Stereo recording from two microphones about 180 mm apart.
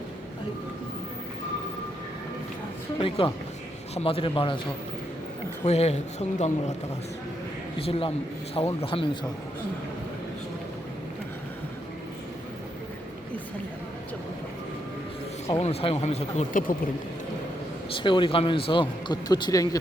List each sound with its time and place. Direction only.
3.0 s speech: 30° left (ahead or behind)
5.6 s speech: 35° left (ahead or behind)
7.8 s speech: 30° left (ahead or behind)
15.6 s speech: 35° left (ahead or behind); by 16.7 s 50° left (ahead or behind)
17.9 s speech: 25° left (ahead or behind)